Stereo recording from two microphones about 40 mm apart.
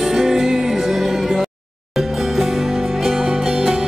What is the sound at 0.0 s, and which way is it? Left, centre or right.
Music, centre.